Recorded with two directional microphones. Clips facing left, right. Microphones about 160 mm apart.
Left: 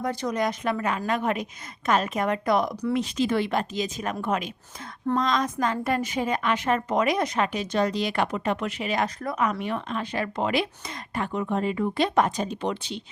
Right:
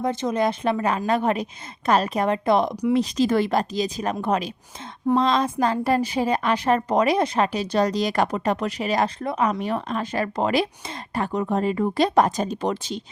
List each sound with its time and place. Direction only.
0.0 s a woman's voice: 25° right (ahead or behind)
2.9 s a woman's voice: 35° right (ahead or behind)